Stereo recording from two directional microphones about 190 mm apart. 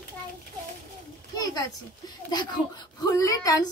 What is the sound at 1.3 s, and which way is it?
Speech, 20° left (ahead or behind).